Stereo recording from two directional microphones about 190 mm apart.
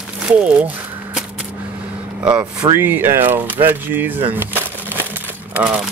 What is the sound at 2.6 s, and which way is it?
Speech, 10° right (ahead or behind).